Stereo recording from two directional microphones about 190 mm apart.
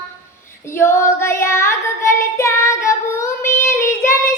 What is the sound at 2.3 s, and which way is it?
Child singing, 15° left (ahead or behind).